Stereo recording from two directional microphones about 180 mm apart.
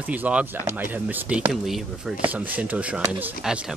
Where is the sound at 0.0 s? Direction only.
10° right (ahead or behind).